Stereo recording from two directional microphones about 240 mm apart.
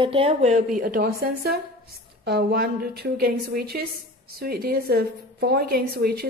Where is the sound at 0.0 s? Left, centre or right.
Right.